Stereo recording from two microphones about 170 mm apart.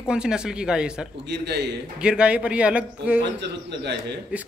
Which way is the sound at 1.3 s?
80° right.